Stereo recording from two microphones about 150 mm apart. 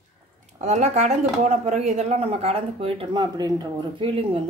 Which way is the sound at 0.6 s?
50° right (ahead or behind).